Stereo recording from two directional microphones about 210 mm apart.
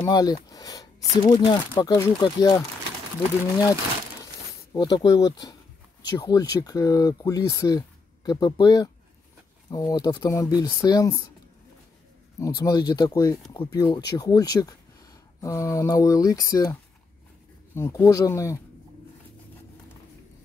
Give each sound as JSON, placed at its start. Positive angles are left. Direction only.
{"t": 0.0, "sound": "speech", "side_deg": 20}
{"t": 1.1, "sound": "speech", "side_deg": 30}
{"t": 4.7, "sound": "speech", "side_deg": 20}
{"t": 12.4, "sound": "speech", "side_deg": 15}
{"t": 17.7, "sound": "speech", "side_deg": 10}